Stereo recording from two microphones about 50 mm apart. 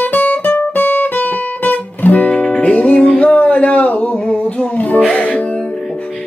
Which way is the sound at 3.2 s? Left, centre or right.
Left.